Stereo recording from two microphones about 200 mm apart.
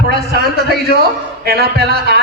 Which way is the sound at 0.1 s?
55° right (ahead or behind).